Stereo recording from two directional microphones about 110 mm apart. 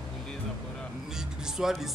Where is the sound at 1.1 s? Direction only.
5° right (ahead or behind).